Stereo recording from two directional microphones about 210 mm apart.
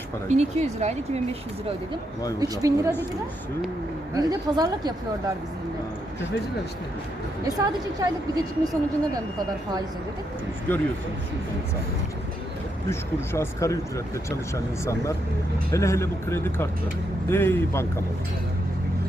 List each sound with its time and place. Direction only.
0.3 s speech: 30° right (ahead or behind)
2.4 s a woman's voice: 15° right (ahead or behind)
4.1 s a woman's voice: 20° right (ahead or behind)
7.4 s a woman's voice: 15° right (ahead or behind)
10.7 s speech: 10° left (ahead or behind)
12.9 s speech: 15° left (ahead or behind)